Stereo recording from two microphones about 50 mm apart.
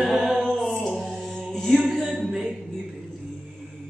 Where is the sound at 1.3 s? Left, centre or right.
Centre.